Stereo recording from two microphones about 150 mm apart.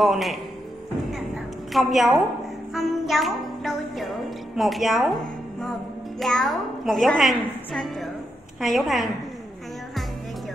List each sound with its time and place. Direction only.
0.0 s a woman's voice: centre (ahead or behind)
1.1 s music: centre (ahead or behind)
4.6 s a child's voice: centre (ahead or behind)